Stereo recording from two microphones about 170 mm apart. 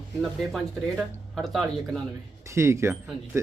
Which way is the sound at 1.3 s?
Centre (ahead or behind).